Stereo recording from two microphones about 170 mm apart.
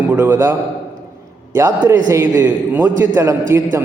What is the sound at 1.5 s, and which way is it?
A man's voice, 15° right (ahead or behind).